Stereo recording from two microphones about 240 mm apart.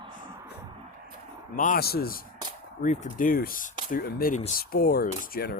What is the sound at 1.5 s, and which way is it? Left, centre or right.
Speech, left.